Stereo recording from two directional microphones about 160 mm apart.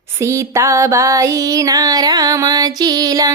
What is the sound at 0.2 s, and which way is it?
Child singing, 20° right (ahead or behind).